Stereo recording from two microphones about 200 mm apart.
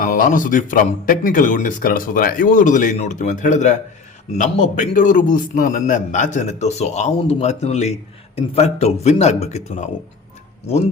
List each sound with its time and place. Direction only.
0.0 s a man's voice: 40° left (ahead or behind)